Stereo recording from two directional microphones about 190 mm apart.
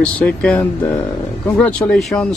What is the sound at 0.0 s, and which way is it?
Speech, 5° left (ahead or behind).